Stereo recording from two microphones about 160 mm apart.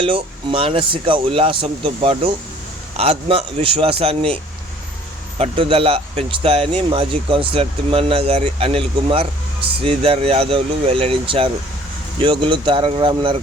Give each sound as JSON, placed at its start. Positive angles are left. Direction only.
{"t": 0.0, "sound": "speech", "side_deg": -35}
{"t": 5.4, "sound": "speech", "side_deg": -35}